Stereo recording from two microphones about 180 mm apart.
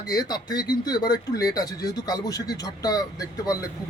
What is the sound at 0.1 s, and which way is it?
A man's voice, 20° left (ahead or behind).